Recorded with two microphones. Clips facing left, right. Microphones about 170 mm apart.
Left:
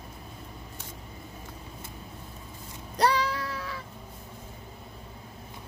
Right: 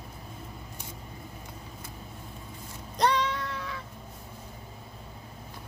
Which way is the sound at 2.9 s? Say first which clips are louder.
Left 1 dB; 10° left (ahead or behind).